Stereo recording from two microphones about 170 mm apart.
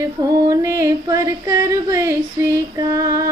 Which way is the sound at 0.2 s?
20° right (ahead or behind).